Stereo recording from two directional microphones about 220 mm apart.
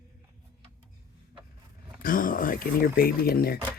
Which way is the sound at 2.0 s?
40° left (ahead or behind).